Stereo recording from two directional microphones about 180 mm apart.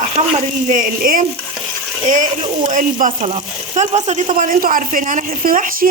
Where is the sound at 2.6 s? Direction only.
45° right (ahead or behind).